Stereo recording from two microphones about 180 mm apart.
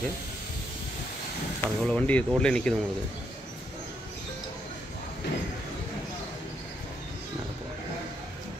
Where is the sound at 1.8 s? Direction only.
5° left (ahead or behind).